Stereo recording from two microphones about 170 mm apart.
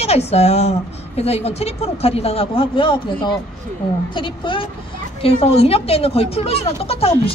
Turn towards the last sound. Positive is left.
turn(degrees=35)  # may be behind; listen again after turning